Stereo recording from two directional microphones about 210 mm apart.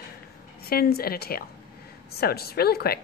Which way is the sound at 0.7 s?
45° left (ahead or behind).